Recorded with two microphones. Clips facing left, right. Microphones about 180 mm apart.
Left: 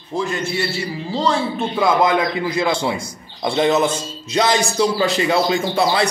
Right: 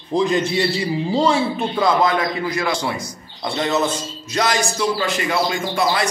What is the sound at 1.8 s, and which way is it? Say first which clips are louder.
A man's voice: left 2 dB; 10° left (ahead or behind).